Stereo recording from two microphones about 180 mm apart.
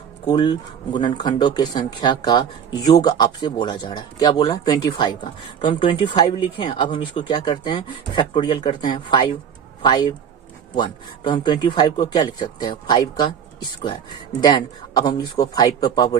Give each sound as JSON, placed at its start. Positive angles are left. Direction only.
{"t": 0.3, "sound": "speech", "side_deg": 25}
{"t": 14.4, "sound": "speech", "side_deg": 20}